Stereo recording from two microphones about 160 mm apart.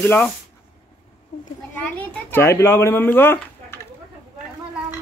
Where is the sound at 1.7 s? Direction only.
10° left (ahead or behind).